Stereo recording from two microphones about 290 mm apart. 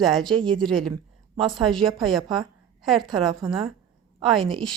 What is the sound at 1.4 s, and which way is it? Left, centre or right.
Speech, centre.